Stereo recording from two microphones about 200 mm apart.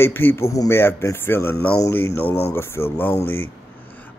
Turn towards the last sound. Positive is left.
turn(degrees=10)  # may be behind; listen again after turning